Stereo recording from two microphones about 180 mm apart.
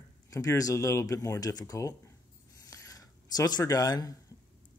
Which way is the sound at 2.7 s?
20° left (ahead or behind).